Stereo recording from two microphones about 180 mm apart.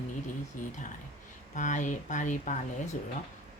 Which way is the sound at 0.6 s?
45° left (ahead or behind).